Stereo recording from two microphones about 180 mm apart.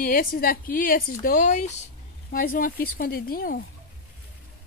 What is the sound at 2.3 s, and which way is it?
A woman's voice, 50° left (ahead or behind).